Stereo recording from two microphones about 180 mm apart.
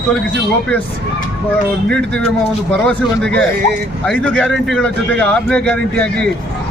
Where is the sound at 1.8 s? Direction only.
5° left (ahead or behind).